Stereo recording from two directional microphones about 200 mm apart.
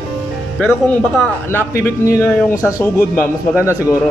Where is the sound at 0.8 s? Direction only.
5° left (ahead or behind).